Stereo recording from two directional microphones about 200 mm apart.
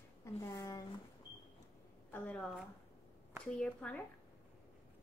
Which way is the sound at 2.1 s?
5° left (ahead or behind).